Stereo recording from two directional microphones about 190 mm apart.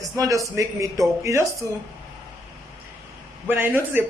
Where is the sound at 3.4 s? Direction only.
10° right (ahead or behind).